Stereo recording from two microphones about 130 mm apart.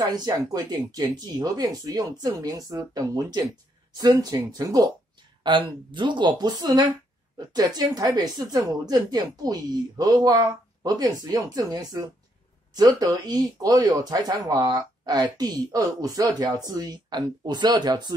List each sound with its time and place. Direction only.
0.1 s a woman's voice: 30° right (ahead or behind)